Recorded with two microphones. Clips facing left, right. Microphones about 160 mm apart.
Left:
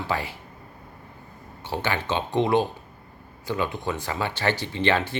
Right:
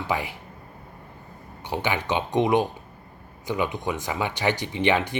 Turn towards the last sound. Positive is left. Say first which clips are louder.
# right 1 dB
turn(degrees=-15)  # may be behind; listen again after turning